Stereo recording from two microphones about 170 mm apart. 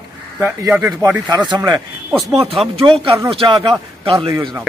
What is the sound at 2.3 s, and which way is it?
A man's voice, 35° right (ahead or behind).